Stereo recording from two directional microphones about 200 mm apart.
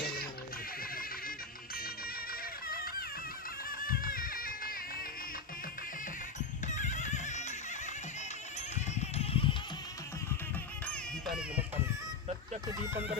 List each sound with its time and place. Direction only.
2.6 s music: 45° left (ahead or behind)
6.7 s music: 35° left (ahead or behind)
9.0 s a sound: 30° left (ahead or behind)
10.8 s music: 5° left (ahead or behind)
12.6 s speech: 15° right (ahead or behind)